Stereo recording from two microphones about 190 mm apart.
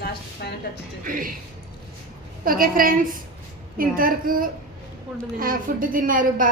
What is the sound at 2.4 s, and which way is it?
A woman's voice, 50° right (ahead or behind).